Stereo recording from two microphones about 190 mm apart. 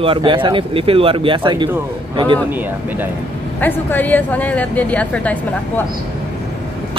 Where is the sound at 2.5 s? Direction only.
10° right (ahead or behind).